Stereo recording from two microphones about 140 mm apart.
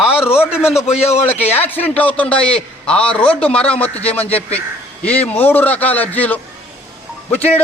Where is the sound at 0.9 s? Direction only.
50° left (ahead or behind).